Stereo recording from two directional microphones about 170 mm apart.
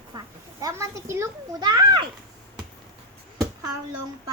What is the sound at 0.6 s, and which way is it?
A child's voice, 15° right (ahead or behind).